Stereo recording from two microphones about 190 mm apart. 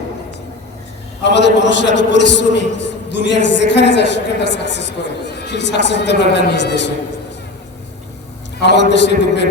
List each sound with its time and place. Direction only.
1.2 s a man's voice: 65° left (ahead or behind)
8.6 s a man's voice: 65° left (ahead or behind)